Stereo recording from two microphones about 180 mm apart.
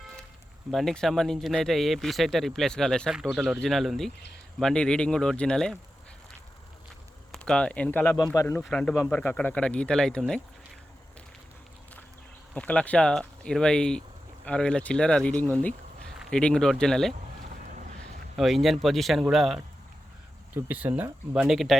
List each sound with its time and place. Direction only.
0.7 s speech: centre (ahead or behind)
7.3 s speech: 5° left (ahead or behind)
8.7 s speech: 5° left (ahead or behind)
12.5 s speech: 5° left (ahead or behind)
18.3 s speech: centre (ahead or behind)